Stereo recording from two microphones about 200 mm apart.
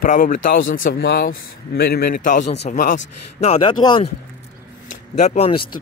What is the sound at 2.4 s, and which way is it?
Speech, 55° left (ahead or behind).